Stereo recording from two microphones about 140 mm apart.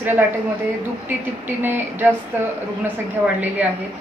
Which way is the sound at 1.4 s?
15° right (ahead or behind).